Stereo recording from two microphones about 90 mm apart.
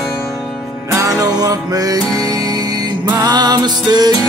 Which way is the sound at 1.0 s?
40° right (ahead or behind).